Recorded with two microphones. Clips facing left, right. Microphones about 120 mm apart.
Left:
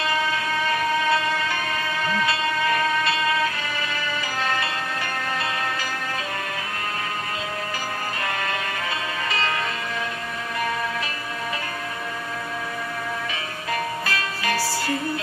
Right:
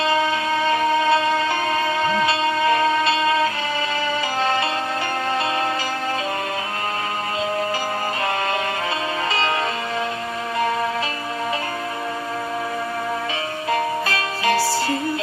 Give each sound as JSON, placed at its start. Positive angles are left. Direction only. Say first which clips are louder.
{"t": 0.0, "sound": "music", "louder": "right 5 dB", "side_deg": -30}
{"t": 13.7, "sound": "music", "louder": "right 5 dB", "side_deg": -25}